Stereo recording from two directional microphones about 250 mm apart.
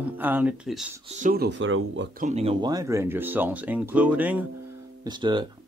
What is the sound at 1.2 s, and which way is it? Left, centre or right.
Music, right.